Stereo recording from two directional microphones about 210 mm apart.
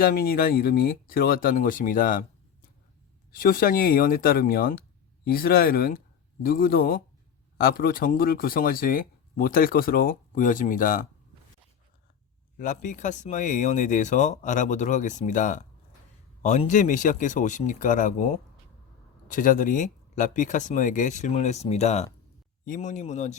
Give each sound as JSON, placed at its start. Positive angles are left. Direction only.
{"t": 0.0, "sound": "speech", "side_deg": 45}
{"t": 12.5, "sound": "speech", "side_deg": 35}